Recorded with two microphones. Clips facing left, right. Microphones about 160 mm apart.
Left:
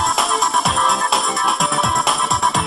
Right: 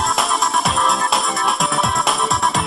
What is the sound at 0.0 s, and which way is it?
Music, centre (ahead or behind).